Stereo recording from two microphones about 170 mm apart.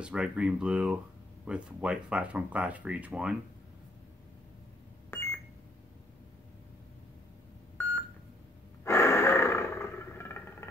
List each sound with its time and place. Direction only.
0.0 s speech: 5° right (ahead or behind)
5.1 s beep: 15° left (ahead or behind)
7.7 s beep: 10° left (ahead or behind)
8.8 s wild animals: 15° left (ahead or behind)